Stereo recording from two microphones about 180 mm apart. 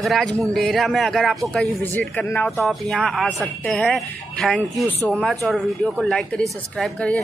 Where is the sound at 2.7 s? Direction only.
Centre (ahead or behind).